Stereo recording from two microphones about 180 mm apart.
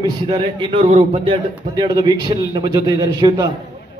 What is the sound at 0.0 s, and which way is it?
A man's voice, 25° right (ahead or behind).